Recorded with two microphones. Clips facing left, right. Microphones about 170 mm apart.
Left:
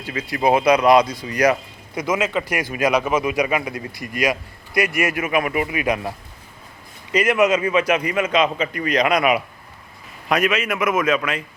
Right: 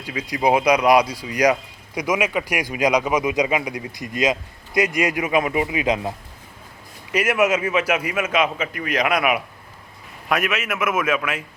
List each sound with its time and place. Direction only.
0.0 s speech: 15° right (ahead or behind)
7.1 s a man's voice: 10° right (ahead or behind)